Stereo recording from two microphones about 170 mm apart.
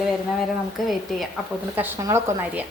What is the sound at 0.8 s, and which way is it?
Speech, centre (ahead or behind).